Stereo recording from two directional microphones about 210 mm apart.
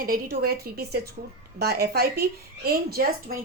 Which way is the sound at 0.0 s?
45° right (ahead or behind).